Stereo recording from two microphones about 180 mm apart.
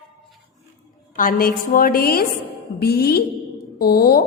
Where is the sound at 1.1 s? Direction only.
50° left (ahead or behind).